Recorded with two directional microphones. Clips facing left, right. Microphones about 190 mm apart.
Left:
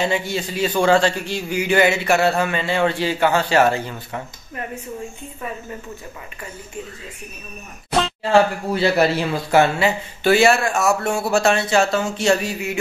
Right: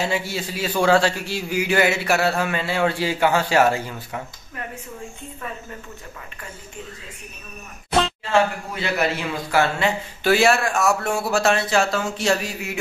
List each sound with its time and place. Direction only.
0.0 s a man's voice: 5° right (ahead or behind)
8.2 s speech: 35° left (ahead or behind)
9.8 s a man's voice: centre (ahead or behind)